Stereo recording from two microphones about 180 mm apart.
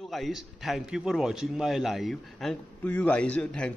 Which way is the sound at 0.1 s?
Centre (ahead or behind).